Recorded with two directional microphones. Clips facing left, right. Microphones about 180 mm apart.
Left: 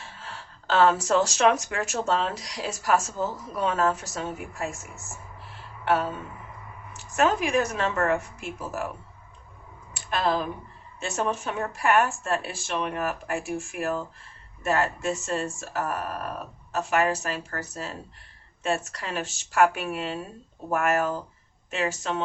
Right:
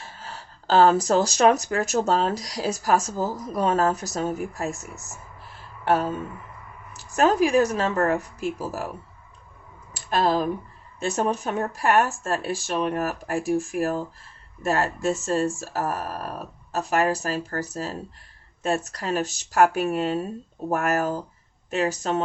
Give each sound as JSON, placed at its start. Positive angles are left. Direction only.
{"t": 0.0, "sound": "speech", "side_deg": -40}
{"t": 5.8, "sound": "a sound", "side_deg": -40}
{"t": 6.9, "sound": "speech", "side_deg": -40}
{"t": 10.1, "sound": "speech", "side_deg": -40}